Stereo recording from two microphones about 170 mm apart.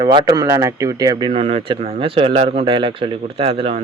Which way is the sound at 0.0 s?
25° right (ahead or behind).